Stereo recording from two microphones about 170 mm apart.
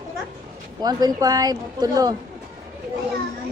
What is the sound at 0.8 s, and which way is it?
A woman's voice, 25° right (ahead or behind).